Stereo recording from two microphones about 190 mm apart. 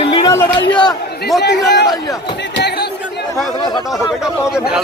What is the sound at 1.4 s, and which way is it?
Speech, 65° left (ahead or behind).